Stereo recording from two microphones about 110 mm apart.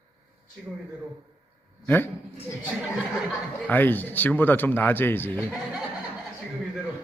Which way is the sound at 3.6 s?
20° left (ahead or behind).